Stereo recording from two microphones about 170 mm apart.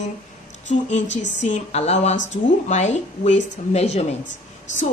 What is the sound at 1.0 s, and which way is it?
Speech, 90° left.